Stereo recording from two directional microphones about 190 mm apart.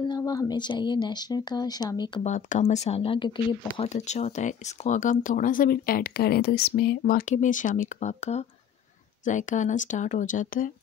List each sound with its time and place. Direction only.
0.0 s speech: 20° left (ahead or behind)
2.2 s speech: 40° left (ahead or behind)
3.9 s speech: 40° left (ahead or behind)